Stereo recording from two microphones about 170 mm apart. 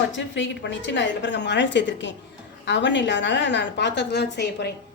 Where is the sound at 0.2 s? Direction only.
90° left.